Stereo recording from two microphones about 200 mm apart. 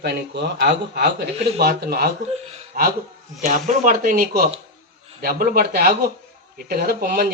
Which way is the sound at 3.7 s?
40° right (ahead or behind).